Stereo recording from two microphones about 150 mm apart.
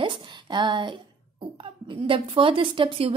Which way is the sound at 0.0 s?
30° right (ahead or behind).